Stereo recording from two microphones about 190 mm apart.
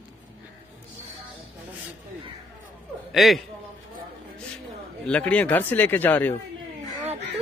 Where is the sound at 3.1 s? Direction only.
Centre (ahead or behind).